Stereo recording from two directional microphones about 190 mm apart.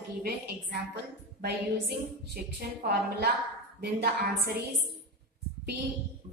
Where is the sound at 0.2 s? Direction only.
60° right (ahead or behind).